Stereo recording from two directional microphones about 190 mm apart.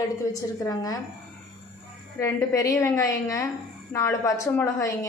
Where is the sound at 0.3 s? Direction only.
20° left (ahead or behind).